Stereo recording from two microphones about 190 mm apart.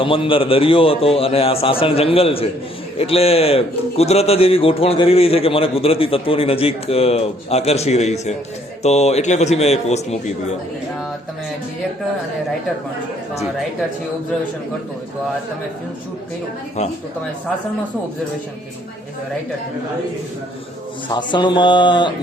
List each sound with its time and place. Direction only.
0.0 s a man's voice: 25° left (ahead or behind)
21.1 s a man's voice: 25° left (ahead or behind)